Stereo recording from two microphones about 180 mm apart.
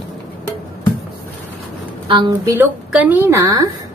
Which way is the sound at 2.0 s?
25° right (ahead or behind).